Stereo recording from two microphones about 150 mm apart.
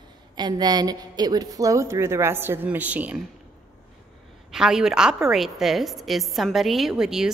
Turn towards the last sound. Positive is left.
turn(degrees=-5)  # may be behind; listen again after turning